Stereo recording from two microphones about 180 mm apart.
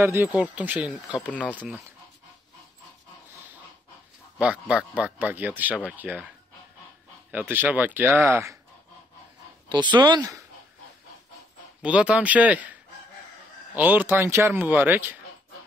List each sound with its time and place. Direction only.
0.0 s speech: 15° right (ahead or behind)
4.4 s speech: 5° right (ahead or behind)
7.2 s speech: 10° right (ahead or behind)
9.7 s speech: 25° right (ahead or behind)
11.8 s speech: 5° right (ahead or behind)
13.7 s speech: 10° right (ahead or behind)